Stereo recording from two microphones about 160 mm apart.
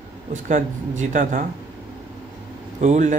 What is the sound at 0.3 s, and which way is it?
A man's voice, 50° right (ahead or behind).